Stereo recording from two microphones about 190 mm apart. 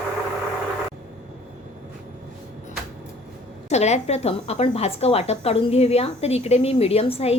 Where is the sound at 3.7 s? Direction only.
35° left (ahead or behind).